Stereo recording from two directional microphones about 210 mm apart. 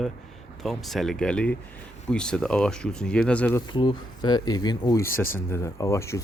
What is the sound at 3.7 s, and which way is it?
Speech, 20° left (ahead or behind).